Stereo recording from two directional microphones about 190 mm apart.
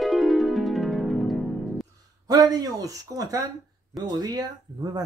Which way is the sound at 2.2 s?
20° right (ahead or behind).